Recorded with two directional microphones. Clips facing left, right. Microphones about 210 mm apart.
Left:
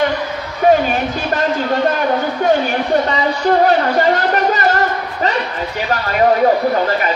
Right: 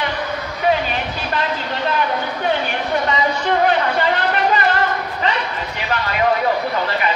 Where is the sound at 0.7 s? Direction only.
45° left (ahead or behind).